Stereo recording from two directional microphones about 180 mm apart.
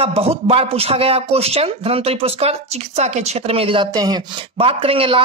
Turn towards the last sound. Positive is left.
turn(degrees=-30)  # may be behind; listen again after turning